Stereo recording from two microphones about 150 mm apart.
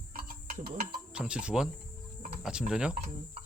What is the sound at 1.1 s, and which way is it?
Speech, 5° right (ahead or behind).